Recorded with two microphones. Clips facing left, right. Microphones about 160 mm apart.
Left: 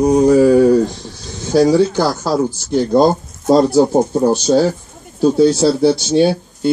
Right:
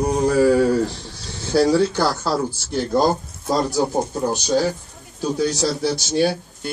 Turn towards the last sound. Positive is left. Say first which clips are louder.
# left 7 dB
turn(degrees=25)  # may be behind; listen again after turning